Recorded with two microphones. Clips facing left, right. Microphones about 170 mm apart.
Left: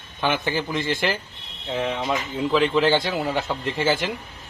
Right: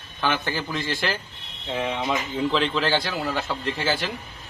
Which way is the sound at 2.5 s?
15° left (ahead or behind).